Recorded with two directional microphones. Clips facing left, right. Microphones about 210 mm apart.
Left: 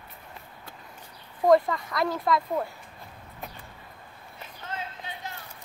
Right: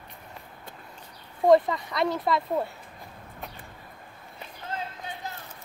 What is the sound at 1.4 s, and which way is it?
Speech, 20° right (ahead or behind).